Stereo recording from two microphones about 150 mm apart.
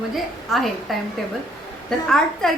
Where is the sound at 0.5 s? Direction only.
Centre (ahead or behind).